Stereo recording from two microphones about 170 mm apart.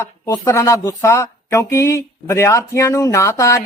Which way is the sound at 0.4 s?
20° left (ahead or behind).